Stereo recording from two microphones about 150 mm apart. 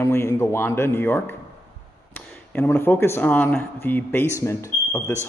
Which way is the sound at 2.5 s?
15° left (ahead or behind).